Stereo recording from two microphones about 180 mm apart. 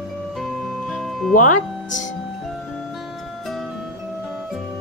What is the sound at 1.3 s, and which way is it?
Speech, 45° left (ahead or behind).